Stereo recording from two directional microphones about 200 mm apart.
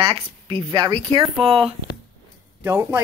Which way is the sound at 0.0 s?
25° right (ahead or behind).